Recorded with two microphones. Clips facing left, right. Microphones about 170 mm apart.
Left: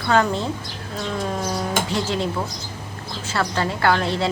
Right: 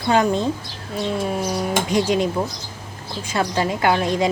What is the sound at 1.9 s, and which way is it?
A woman's voice, 15° right (ahead or behind).